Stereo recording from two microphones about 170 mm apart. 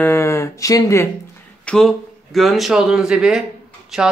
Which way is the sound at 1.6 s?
5° left (ahead or behind).